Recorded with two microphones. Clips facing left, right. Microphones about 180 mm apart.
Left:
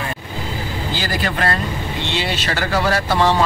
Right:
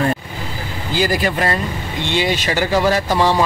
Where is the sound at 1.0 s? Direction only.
15° right (ahead or behind).